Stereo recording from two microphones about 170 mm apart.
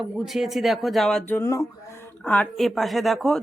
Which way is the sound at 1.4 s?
20° left (ahead or behind).